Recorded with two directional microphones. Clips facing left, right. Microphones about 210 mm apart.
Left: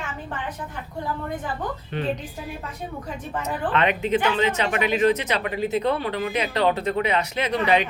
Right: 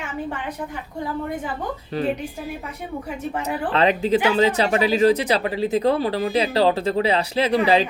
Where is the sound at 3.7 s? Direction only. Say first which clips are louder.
Right 3 dB; 30° right (ahead or behind).